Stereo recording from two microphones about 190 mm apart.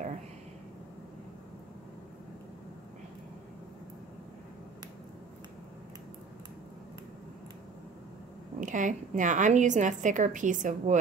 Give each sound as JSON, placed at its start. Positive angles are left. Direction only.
{"t": 8.5, "sound": "a woman's voice", "side_deg": -40}